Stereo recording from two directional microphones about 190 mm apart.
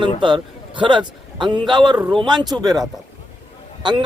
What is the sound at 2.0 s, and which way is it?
Speech, centre (ahead or behind).